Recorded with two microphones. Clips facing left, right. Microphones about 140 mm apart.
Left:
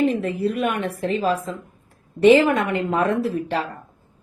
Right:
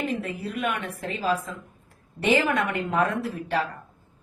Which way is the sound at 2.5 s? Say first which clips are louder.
Left 5 dB; 30° left (ahead or behind).